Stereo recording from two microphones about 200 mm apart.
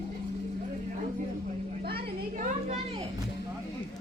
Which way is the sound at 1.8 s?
50° right (ahead or behind).